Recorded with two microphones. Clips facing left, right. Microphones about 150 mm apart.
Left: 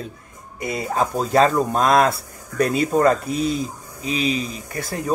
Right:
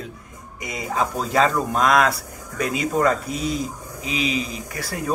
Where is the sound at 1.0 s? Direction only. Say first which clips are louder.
Left 3 dB; 30° left (ahead or behind).